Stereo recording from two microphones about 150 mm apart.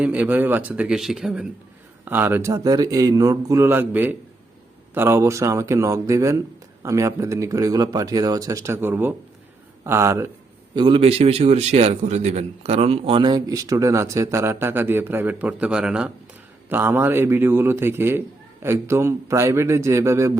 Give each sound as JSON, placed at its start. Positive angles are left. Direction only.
{"t": 0.0, "sound": "a man's voice", "side_deg": -10}
{"t": 10.8, "sound": "a man's voice", "side_deg": -35}